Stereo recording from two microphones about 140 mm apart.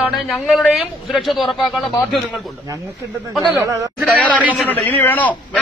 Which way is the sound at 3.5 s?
10° right (ahead or behind).